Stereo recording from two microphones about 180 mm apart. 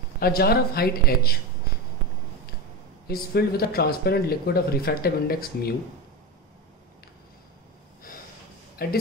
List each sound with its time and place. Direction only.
0.2 s speech: 60° left (ahead or behind)
3.1 s speech: 60° left (ahead or behind)
8.8 s speech: 55° left (ahead or behind)